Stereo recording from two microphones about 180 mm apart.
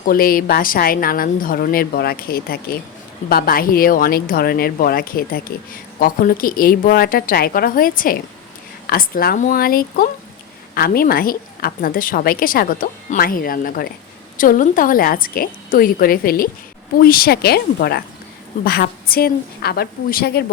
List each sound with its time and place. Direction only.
0.1 s a woman's voice: 55° left (ahead or behind)